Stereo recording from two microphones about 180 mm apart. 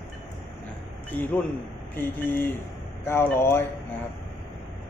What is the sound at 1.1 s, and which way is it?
A man's voice, 10° left (ahead or behind).